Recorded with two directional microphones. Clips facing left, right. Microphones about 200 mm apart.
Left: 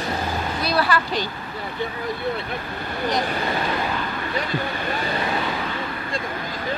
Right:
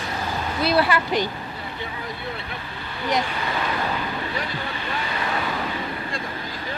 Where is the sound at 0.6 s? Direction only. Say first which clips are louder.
Right 3 dB; 25° right (ahead or behind).